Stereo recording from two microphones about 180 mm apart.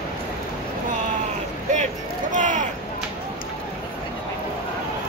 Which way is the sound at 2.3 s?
45° right (ahead or behind).